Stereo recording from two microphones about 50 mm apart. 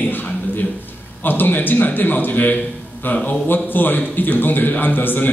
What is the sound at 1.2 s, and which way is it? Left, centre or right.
A man's voice, left.